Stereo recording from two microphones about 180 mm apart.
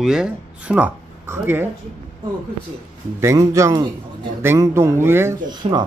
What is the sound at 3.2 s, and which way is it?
Speech, 15° right (ahead or behind).